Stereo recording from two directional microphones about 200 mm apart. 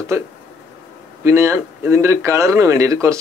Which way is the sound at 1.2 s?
15° right (ahead or behind).